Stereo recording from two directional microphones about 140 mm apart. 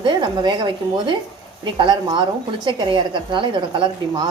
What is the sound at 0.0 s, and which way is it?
A woman's voice, 30° right (ahead or behind).